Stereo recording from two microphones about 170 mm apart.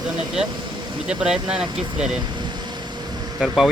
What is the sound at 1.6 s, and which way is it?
Speech, 25° right (ahead or behind).